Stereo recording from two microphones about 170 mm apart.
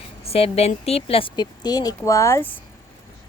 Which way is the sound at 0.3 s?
35° left (ahead or behind).